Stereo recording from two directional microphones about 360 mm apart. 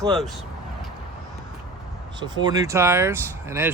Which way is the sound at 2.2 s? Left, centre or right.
Centre.